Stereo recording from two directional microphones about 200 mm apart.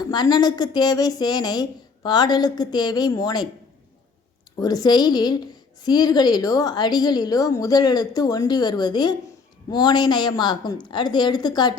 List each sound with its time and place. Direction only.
0.1 s a woman's voice: 20° left (ahead or behind)
4.6 s a woman's voice: 20° left (ahead or behind)